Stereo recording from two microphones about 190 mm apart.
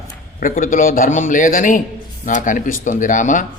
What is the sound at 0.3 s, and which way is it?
Speech, 45° left (ahead or behind).